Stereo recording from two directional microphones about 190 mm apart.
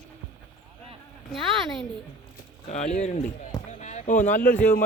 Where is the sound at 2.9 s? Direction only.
40° left (ahead or behind).